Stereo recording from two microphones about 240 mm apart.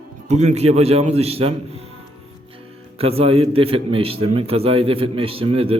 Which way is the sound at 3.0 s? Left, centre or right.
Right.